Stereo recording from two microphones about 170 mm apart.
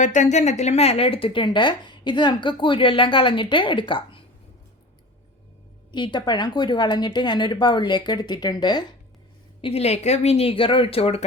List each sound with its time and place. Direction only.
0.0 s speech: 45° left (ahead or behind)
5.9 s speech: 25° left (ahead or behind)
9.6 s speech: 35° left (ahead or behind)